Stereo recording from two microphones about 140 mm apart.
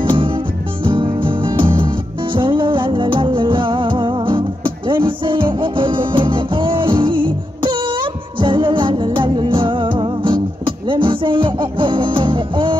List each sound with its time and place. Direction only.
0.1 s music: 35° right (ahead or behind)